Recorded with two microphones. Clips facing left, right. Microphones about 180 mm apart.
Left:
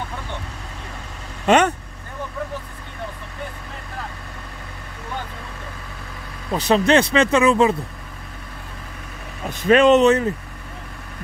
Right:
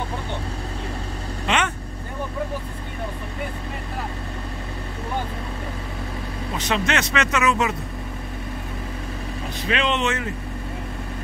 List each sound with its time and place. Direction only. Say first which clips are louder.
1.5 s speech: left 8 dB; 45° left (ahead or behind)
6.5 s speech: left 8 dB; 35° left (ahead or behind)
9.6 s speech: left 11 dB; 45° left (ahead or behind)